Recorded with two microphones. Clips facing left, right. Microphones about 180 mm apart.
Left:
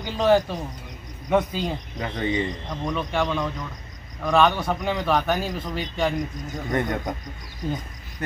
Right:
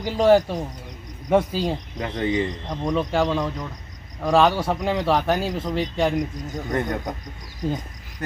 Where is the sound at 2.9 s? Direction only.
35° right (ahead or behind).